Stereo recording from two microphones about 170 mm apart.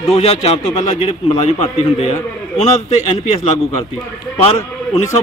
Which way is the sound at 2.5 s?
40° left (ahead or behind).